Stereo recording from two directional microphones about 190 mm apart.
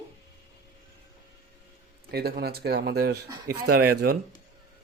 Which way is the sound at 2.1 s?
55° right (ahead or behind).